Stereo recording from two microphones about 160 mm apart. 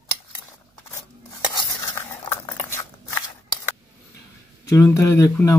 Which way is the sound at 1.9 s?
15° left (ahead or behind).